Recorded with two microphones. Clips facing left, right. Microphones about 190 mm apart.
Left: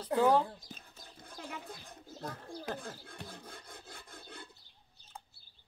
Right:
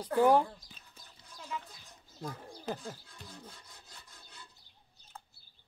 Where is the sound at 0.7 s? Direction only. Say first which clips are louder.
Left 7 dB; 55° left (ahead or behind).